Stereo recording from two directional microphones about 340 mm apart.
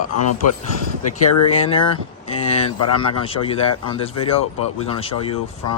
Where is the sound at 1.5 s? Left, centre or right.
Centre.